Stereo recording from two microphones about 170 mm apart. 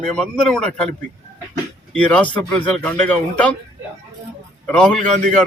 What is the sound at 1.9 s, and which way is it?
Speech, 5° left (ahead or behind).